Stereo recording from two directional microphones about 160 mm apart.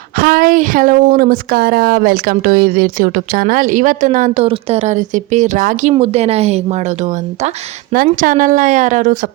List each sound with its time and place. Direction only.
0.2 s speech: 65° right (ahead or behind)
4.4 s speech: 40° right (ahead or behind); by 5.9 s 55° right (ahead or behind)
5.9 s speech: 40° right (ahead or behind)
7.9 s speech: 60° right (ahead or behind)